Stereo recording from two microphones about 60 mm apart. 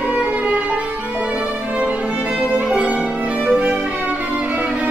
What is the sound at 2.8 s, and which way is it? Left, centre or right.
Violin, centre.